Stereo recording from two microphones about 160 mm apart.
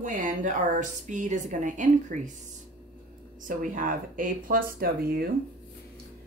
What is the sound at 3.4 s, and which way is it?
Speech, 60° right (ahead or behind).